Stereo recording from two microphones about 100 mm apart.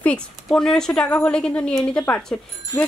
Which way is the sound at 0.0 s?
10° left (ahead or behind).